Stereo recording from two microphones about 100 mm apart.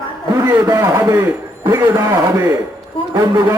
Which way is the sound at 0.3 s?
35° right (ahead or behind).